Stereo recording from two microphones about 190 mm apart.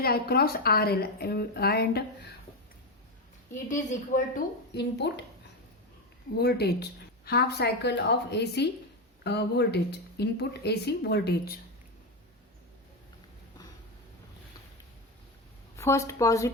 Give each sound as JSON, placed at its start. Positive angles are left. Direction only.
{"t": 0.0, "sound": "speech", "side_deg": 55}
{"t": 3.7, "sound": "speech", "side_deg": 40}
{"t": 6.3, "sound": "speech", "side_deg": 55}
{"t": 15.7, "sound": "speech", "side_deg": 15}